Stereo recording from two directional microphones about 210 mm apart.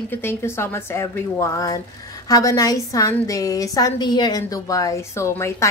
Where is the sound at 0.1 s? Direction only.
10° left (ahead or behind).